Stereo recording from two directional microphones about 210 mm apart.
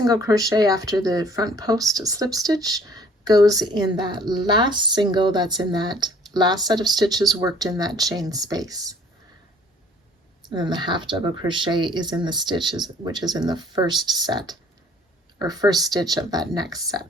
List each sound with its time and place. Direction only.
0.0 s speech: 15° right (ahead or behind)
10.5 s speech: 20° right (ahead or behind)